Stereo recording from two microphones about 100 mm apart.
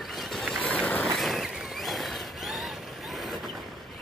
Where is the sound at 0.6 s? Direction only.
15° left (ahead or behind).